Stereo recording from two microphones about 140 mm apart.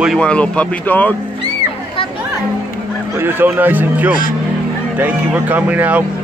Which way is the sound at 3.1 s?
15° right (ahead or behind).